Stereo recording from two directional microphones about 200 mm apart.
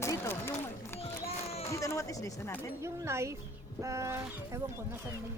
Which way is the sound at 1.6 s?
15° left (ahead or behind).